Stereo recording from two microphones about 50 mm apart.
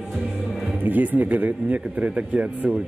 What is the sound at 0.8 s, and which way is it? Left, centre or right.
Speech, right.